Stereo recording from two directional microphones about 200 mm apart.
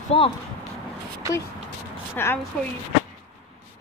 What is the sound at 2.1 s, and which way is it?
Speech, 10° left (ahead or behind).